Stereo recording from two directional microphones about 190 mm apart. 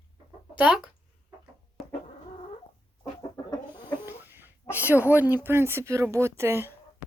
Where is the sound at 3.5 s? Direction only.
25° left (ahead or behind).